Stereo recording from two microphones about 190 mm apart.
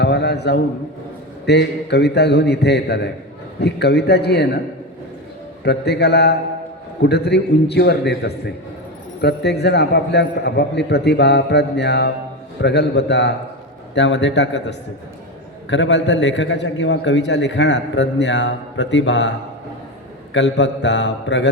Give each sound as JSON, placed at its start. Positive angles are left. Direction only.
{"t": 0.0, "sound": "a man's voice", "side_deg": 60}
{"t": 5.6, "sound": "a man's voice", "side_deg": 60}
{"t": 20.3, "sound": "a man's voice", "side_deg": 70}